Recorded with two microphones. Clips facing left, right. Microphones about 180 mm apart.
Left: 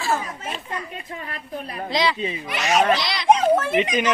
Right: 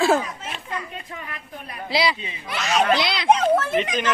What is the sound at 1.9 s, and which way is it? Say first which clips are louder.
Speech: even; 10° right (ahead or behind).